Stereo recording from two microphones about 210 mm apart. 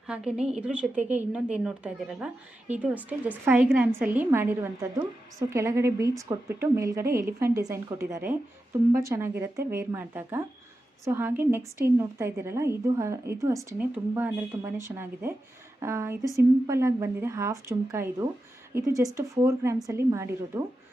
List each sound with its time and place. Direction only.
0.1 s a woman's voice: 5° right (ahead or behind)